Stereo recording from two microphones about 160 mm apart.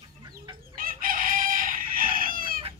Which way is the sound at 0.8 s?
60° right (ahead or behind).